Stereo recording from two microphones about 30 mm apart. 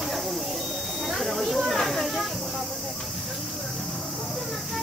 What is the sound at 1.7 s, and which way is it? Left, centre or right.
Snake, centre.